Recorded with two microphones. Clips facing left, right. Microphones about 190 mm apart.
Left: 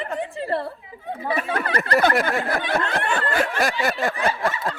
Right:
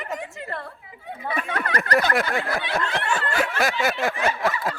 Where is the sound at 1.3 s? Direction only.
30° left (ahead or behind).